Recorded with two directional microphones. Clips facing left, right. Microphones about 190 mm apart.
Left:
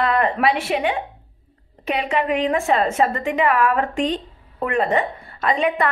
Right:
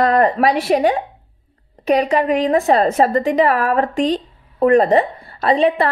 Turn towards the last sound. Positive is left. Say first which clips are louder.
# right 5 dB
turn(degrees=-30)  # may be behind; listen again after turning